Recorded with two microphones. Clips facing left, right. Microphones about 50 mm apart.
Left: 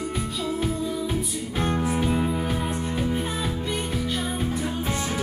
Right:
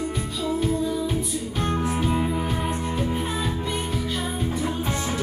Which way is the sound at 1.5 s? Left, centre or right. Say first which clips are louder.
Left 1 dB; centre.